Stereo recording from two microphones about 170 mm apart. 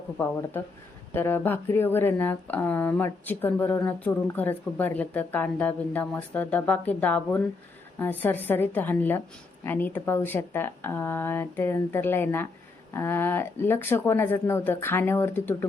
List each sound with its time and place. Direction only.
1.1 s speech: 15° left (ahead or behind)